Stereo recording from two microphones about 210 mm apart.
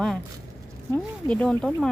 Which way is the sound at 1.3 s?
5° left (ahead or behind).